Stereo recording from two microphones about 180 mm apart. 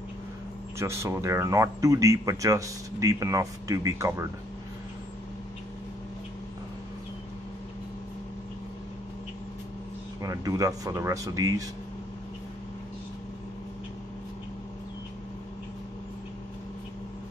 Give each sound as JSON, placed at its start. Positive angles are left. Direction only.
{"t": 0.7, "sound": "speech", "side_deg": -15}
{"t": 10.2, "sound": "speech", "side_deg": -20}